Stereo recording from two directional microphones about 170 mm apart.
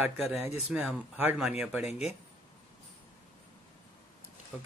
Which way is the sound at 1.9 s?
40° left (ahead or behind).